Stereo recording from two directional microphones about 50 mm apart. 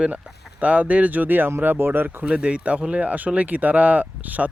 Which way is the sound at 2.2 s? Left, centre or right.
Right.